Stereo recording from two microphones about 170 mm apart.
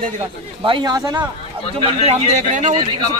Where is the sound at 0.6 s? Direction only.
25° right (ahead or behind).